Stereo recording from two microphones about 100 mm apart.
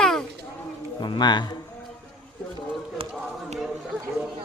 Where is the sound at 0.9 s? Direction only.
50° left (ahead or behind).